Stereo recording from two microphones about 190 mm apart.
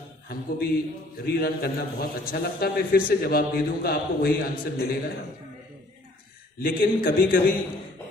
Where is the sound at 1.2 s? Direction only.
55° left (ahead or behind).